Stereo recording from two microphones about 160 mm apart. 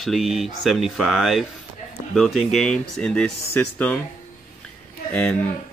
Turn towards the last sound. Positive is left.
turn(degrees=10)  # may be behind; listen again after turning